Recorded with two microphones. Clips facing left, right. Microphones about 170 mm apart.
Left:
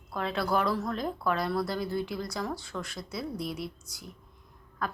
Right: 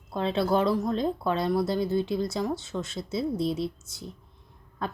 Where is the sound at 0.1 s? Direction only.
25° right (ahead or behind).